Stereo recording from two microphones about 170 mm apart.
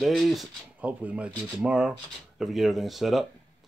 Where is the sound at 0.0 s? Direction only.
Centre (ahead or behind).